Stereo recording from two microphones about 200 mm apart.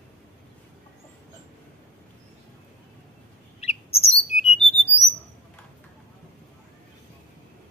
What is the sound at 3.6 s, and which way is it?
Bird, 30° left (ahead or behind).